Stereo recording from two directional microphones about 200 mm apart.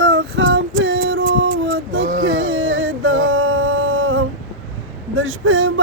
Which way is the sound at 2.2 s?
75° right (ahead or behind).